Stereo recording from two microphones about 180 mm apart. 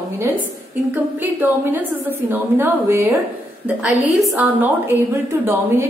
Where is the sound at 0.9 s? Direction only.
10° right (ahead or behind).